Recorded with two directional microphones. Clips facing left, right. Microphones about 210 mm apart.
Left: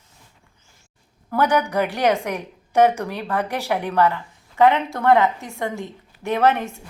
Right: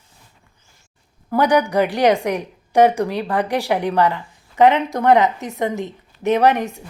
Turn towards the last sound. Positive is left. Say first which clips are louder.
# right 3 dB
turn(degrees=-15)  # may be behind; listen again after turning